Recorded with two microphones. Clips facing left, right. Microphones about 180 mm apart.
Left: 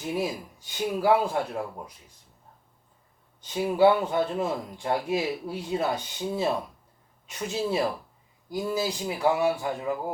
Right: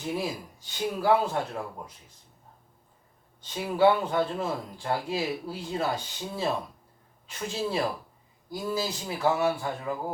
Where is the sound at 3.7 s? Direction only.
15° left (ahead or behind).